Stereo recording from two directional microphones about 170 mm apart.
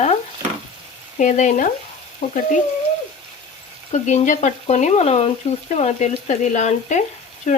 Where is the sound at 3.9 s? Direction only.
45° left (ahead or behind).